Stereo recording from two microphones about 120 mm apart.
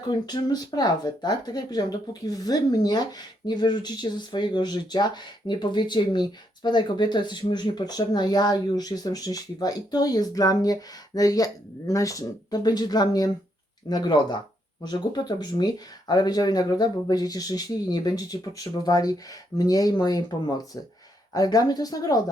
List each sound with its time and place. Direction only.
0.1 s speech: 35° left (ahead or behind)